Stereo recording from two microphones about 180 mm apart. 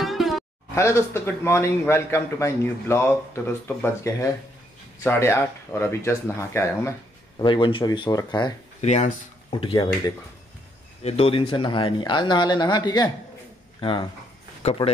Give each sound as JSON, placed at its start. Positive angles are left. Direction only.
{"t": 0.0, "sound": "music", "side_deg": 0}
{"t": 0.7, "sound": "a man's voice", "side_deg": 15}
{"t": 7.4, "sound": "speech", "side_deg": 25}
{"t": 8.8, "sound": "speech", "side_deg": 40}
{"t": 11.1, "sound": "speech", "side_deg": 30}